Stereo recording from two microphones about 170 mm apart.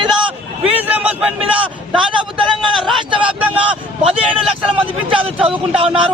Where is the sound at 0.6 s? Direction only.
10° right (ahead or behind).